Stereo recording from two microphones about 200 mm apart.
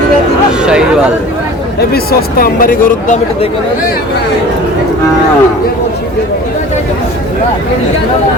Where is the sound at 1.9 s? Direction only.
50° left (ahead or behind).